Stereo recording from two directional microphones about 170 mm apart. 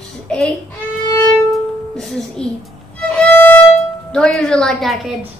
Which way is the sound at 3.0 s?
10° left (ahead or behind).